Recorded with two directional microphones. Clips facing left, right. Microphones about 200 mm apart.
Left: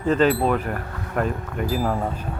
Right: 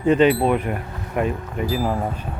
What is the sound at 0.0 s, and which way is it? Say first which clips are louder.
Speech: right 3 dB; centre (ahead or behind).